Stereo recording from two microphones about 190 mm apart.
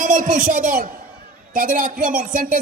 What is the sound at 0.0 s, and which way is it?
A man's voice, 45° right (ahead or behind).